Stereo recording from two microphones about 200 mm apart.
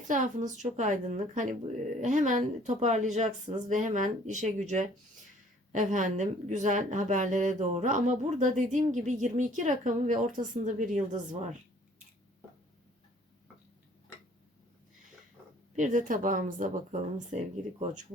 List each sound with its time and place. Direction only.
0.1 s speech: 40° right (ahead or behind)
15.7 s speech: 40° right (ahead or behind)